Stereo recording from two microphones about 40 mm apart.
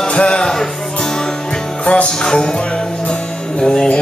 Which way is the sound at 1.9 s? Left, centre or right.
Left.